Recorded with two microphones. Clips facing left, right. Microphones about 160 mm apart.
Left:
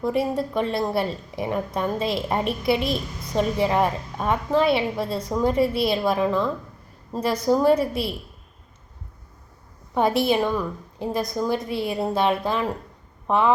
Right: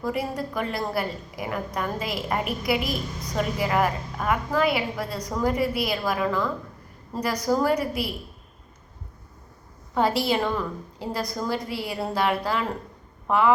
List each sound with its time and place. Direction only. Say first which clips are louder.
0.0 s a woman's voice: left 5 dB; 25° left (ahead or behind)
9.9 s a woman's voice: left 3 dB; 20° left (ahead or behind)